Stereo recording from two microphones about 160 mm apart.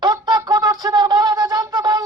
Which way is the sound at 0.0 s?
25° right (ahead or behind).